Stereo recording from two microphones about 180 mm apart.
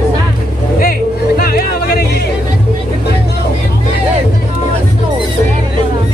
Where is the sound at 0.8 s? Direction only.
55° left (ahead or behind).